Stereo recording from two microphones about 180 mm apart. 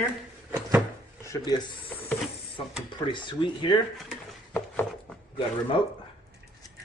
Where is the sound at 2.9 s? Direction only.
25° left (ahead or behind).